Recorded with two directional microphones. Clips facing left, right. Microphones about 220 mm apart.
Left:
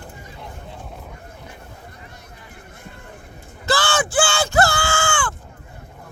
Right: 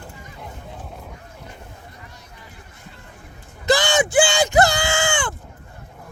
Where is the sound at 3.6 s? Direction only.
20° right (ahead or behind).